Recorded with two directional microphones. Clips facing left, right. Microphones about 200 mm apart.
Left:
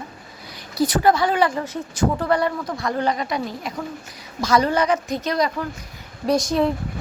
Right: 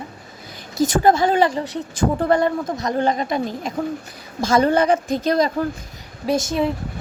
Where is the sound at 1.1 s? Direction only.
25° right (ahead or behind).